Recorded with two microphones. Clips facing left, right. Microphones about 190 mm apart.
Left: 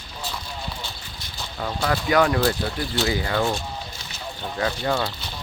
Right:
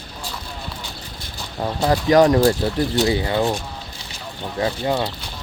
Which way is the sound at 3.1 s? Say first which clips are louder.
Right 3 dB; 25° right (ahead or behind).